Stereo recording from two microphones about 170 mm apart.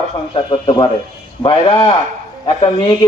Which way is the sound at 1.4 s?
30° left (ahead or behind).